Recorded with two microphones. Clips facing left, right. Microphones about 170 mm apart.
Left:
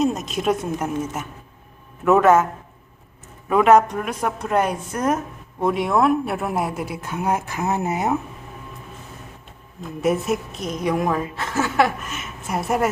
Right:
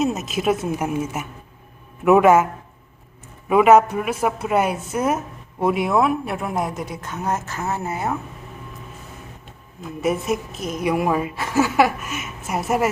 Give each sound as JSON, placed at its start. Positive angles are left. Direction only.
{"t": 0.0, "sound": "a woman's voice", "side_deg": -5}
{"t": 3.5, "sound": "a woman's voice", "side_deg": -5}
{"t": 9.8, "sound": "a woman's voice", "side_deg": 0}